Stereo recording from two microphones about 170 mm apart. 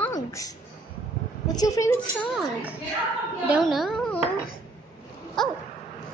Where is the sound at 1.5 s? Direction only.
20° left (ahead or behind).